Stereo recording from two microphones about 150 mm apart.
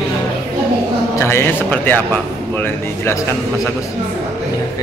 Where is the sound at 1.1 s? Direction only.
15° left (ahead or behind).